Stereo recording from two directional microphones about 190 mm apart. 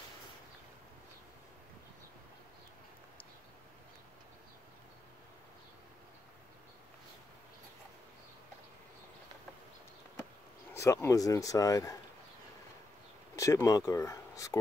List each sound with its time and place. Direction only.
10.7 s speech: 15° left (ahead or behind)
13.4 s speech: 15° left (ahead or behind)